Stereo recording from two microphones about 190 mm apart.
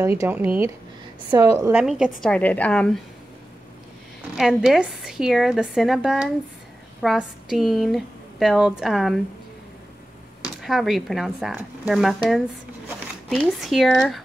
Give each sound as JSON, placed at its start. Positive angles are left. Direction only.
{"t": 0.0, "sound": "speech", "side_deg": -15}
{"t": 1.7, "sound": "speech", "side_deg": -5}
{"t": 2.3, "sound": "a woman's voice", "side_deg": 10}
{"t": 4.4, "sound": "speech", "side_deg": 0}
{"t": 10.6, "sound": "speech", "side_deg": 0}